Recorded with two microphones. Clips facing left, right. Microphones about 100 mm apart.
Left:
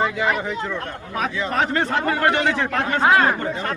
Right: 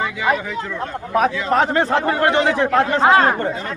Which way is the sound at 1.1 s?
35° right (ahead or behind).